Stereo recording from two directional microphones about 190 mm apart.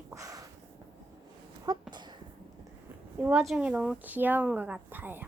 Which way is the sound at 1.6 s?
20° right (ahead or behind).